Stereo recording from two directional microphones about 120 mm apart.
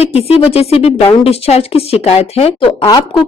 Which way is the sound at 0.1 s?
55° left (ahead or behind).